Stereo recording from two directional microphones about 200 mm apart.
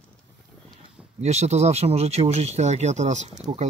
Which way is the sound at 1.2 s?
35° right (ahead or behind).